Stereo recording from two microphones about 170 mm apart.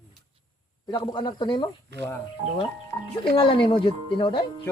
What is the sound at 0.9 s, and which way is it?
Speech, 25° left (ahead or behind).